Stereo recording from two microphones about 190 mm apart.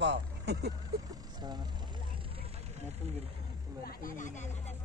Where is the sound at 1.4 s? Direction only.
20° right (ahead or behind).